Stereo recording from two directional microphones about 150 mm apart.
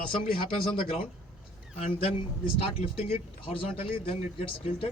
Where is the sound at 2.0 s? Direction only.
40° left (ahead or behind).